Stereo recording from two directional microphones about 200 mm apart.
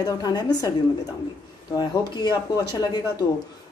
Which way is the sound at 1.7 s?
20° left (ahead or behind).